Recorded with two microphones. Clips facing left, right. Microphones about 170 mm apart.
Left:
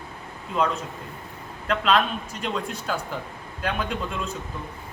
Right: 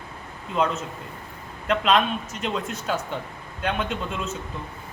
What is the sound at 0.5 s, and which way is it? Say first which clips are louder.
A man's voice: even; 5° right (ahead or behind).